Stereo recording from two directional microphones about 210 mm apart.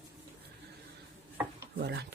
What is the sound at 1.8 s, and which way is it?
Speech, 50° right (ahead or behind).